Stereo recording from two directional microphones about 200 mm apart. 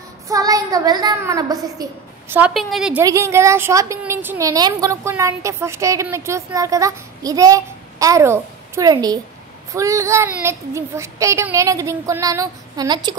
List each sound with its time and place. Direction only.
0.3 s a woman's voice: 15° right (ahead or behind); by 3.0 s centre (ahead or behind)
3.0 s a woman's voice: 15° right (ahead or behind)